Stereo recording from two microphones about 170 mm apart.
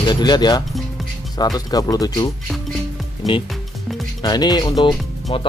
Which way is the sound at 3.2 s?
Centre (ahead or behind).